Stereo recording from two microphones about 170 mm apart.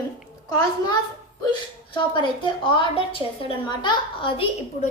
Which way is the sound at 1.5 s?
25° left (ahead or behind).